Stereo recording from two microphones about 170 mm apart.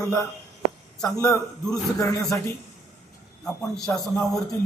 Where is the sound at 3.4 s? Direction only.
Centre (ahead or behind).